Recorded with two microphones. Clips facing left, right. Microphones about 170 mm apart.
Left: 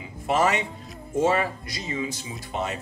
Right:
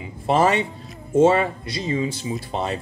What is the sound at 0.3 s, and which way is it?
Speech, 30° right (ahead or behind).